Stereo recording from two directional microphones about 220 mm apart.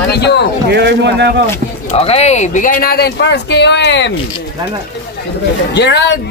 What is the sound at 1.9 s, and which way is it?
Speech, 30° left (ahead or behind).